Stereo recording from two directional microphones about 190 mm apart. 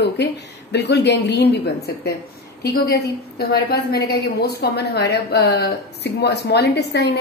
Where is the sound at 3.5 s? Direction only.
55° left (ahead or behind).